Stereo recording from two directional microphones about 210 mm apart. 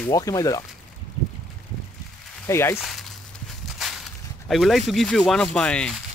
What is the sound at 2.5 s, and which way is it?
Speech, 15° left (ahead or behind).